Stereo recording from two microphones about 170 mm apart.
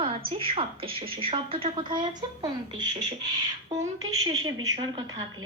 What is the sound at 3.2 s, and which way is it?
Beatboxing, 20° right (ahead or behind).